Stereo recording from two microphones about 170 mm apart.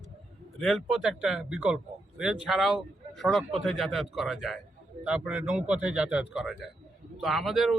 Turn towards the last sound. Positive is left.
turn(degrees=0)  # may be behind; listen again after turning